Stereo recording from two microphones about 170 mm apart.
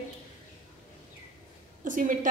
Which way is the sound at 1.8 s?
50° right (ahead or behind).